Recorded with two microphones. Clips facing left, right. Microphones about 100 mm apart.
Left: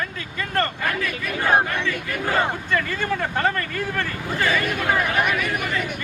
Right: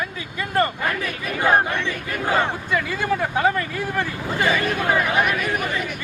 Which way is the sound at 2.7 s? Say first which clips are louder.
Right 1 dB; 10° right (ahead or behind).